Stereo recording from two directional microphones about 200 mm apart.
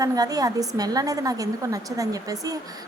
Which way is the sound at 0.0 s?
20° right (ahead or behind).